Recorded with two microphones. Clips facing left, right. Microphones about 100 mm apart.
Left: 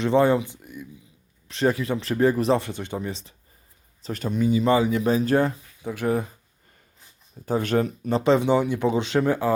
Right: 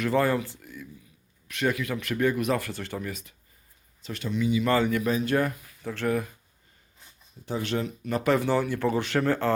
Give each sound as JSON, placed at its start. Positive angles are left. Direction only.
{"t": 0.0, "sound": "speech", "side_deg": 20}
{"t": 1.5, "sound": "speech", "side_deg": 30}
{"t": 4.0, "sound": "speech", "side_deg": 40}
{"t": 4.9, "sound": "speech", "side_deg": 25}
{"t": 7.4, "sound": "speech", "side_deg": 45}
{"t": 8.1, "sound": "speech", "side_deg": 20}